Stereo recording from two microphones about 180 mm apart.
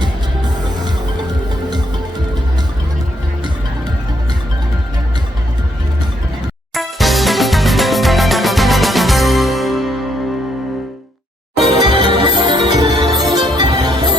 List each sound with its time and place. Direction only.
6.7 s music: centre (ahead or behind)
11.8 s music: 25° right (ahead or behind)